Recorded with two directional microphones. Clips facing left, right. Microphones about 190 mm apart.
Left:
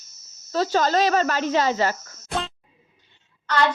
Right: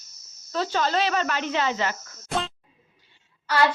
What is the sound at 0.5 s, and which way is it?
Speech, 40° left (ahead or behind).